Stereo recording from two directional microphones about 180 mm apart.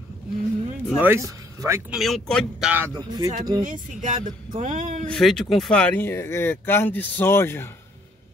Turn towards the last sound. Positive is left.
turn(degrees=15)  # may be behind; listen again after turning